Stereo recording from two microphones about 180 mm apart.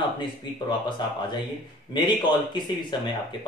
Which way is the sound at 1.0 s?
25° left (ahead or behind).